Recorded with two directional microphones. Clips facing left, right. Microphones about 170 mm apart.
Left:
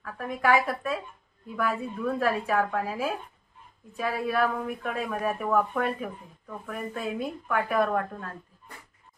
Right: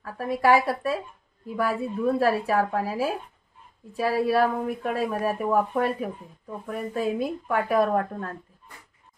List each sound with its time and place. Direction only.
0.0 s speech: 35° right (ahead or behind)